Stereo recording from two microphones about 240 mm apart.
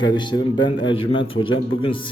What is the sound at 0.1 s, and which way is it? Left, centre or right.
Speech, centre.